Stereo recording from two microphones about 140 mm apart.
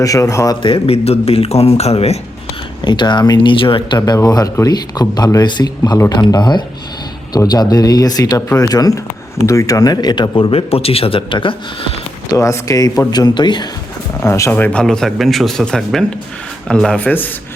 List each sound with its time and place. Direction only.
0.0 s speech: 25° left (ahead or behind)
0.6 s speech: 45° left (ahead or behind)
2.8 s speech: 30° left (ahead or behind)
12.3 s speech: 25° left (ahead or behind)
14.2 s a man's voice: 20° left (ahead or behind)